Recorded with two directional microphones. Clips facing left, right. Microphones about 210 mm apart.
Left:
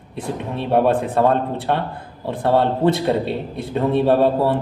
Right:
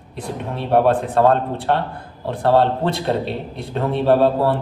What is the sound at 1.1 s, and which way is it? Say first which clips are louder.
Speech: right 1 dB; 15° left (ahead or behind).